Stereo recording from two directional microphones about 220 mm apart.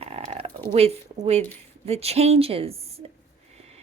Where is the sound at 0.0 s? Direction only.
25° right (ahead or behind).